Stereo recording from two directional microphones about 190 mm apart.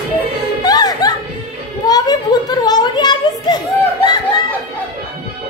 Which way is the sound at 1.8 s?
20° left (ahead or behind).